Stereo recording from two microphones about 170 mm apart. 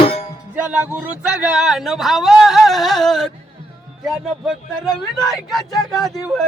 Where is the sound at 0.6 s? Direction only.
10° right (ahead or behind).